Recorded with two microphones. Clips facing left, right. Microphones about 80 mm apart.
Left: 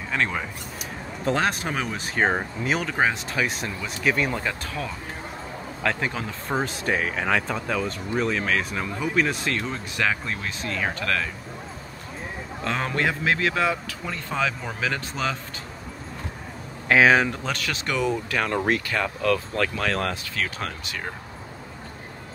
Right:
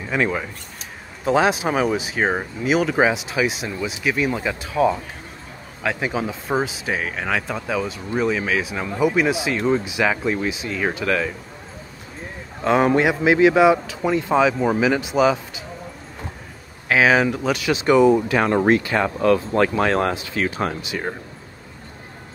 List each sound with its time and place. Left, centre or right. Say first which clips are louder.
0.1 s speech: right 4 dB; centre
12.6 s speech: right 9 dB; centre
16.9 s speech: right 1 dB; centre